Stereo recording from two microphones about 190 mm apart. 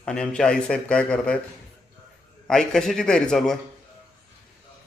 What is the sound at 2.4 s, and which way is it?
A man's voice, 5° left (ahead or behind).